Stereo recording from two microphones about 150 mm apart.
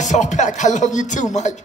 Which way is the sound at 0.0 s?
55° left (ahead or behind).